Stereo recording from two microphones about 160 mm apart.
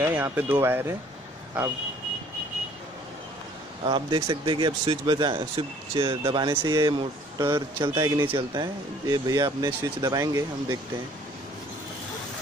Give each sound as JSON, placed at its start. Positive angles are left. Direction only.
{"t": 0.0, "sound": "speech", "side_deg": -10}
{"t": 3.8, "sound": "speech", "side_deg": -30}